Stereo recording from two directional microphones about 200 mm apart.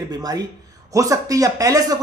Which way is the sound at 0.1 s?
20° right (ahead or behind).